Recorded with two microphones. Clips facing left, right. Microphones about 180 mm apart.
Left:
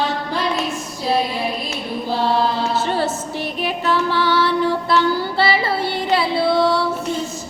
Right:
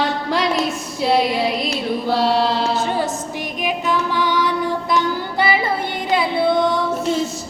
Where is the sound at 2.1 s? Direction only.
80° right.